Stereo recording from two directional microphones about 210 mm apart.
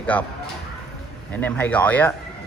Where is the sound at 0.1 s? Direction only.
10° left (ahead or behind).